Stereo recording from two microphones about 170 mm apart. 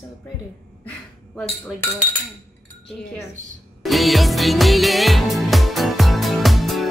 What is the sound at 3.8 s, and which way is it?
Music, centre (ahead or behind).